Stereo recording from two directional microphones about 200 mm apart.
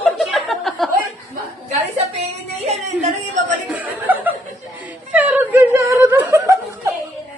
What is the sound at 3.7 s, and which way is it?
Chuckle, 10° right (ahead or behind).